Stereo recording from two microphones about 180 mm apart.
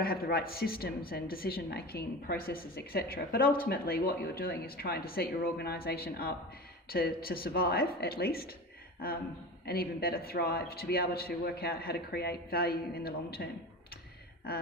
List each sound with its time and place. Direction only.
0.0 s a man's voice: 55° left (ahead or behind)
9.6 s a man's voice: 60° left (ahead or behind)